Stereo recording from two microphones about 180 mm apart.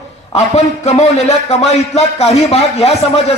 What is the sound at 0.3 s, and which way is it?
A man's voice, 40° left (ahead or behind).